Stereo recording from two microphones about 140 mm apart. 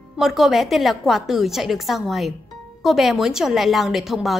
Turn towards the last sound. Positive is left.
turn(degrees=0)  # may be behind; listen again after turning